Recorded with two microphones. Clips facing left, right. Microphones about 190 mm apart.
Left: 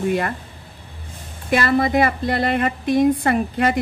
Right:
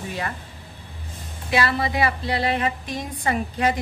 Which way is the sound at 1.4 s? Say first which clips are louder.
Left 5 dB; 50° left (ahead or behind).